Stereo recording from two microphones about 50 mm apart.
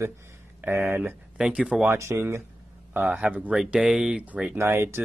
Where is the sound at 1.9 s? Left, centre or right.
Right.